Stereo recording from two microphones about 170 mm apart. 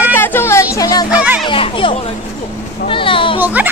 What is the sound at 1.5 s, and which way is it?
A child's voice, 30° left (ahead or behind).